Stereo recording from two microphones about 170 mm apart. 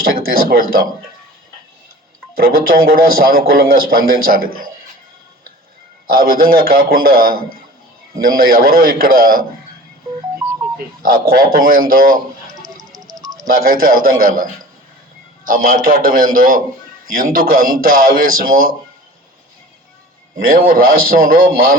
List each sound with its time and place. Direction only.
0.0 s speech: 60° right (ahead or behind)
2.3 s speech: 60° right (ahead or behind)
6.1 s speech: 60° right (ahead or behind)
10.8 s speech: 60° right (ahead or behind)
13.1 s music: 20° right (ahead or behind)
13.4 s speech: 60° right (ahead or behind)
20.5 s speech: 55° right (ahead or behind)